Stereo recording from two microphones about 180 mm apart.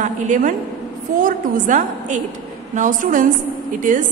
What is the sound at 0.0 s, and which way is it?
A woman's voice, 45° right (ahead or behind).